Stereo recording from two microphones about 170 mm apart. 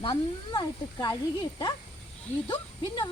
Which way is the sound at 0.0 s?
25° left (ahead or behind).